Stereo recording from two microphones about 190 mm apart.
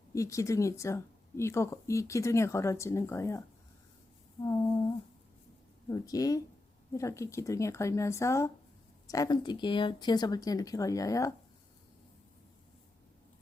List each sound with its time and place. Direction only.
0.1 s speech: 15° left (ahead or behind)
5.9 s speech: 20° left (ahead or behind)